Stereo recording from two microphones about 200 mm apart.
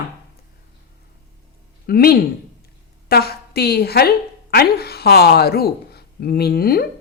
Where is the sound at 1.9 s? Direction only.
50° left (ahead or behind).